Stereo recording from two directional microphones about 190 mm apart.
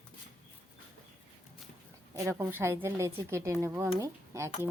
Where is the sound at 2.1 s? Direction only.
15° right (ahead or behind).